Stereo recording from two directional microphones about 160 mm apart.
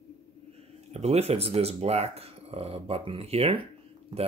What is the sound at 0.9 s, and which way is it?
Speech, 40° right (ahead or behind).